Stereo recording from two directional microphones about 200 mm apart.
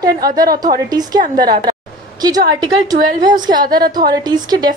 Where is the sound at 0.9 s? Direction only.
20° right (ahead or behind).